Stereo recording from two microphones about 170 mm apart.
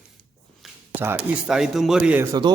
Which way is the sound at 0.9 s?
15° right (ahead or behind).